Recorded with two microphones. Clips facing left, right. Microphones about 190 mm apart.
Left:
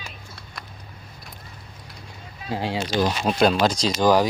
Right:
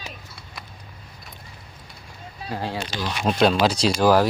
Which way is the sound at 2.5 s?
15° left (ahead or behind).